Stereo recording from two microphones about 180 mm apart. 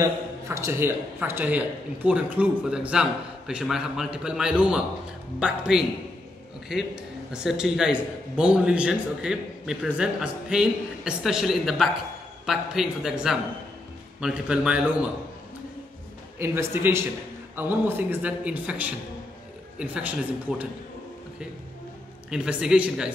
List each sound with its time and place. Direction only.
0.0 s a man's voice: 15° right (ahead or behind)
14.2 s a man's voice: 5° right (ahead or behind)
16.3 s a man's voice: 15° right (ahead or behind)
22.3 s a man's voice: 5° right (ahead or behind)